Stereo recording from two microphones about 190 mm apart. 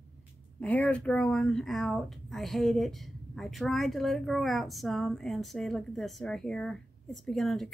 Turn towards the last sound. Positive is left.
turn(degrees=0)  # may be behind; listen again after turning